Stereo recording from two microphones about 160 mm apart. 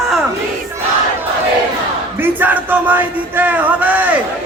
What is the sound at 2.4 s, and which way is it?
Speech, 10° right (ahead or behind).